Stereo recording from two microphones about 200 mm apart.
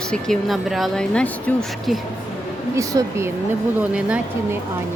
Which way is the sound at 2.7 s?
15° right (ahead or behind).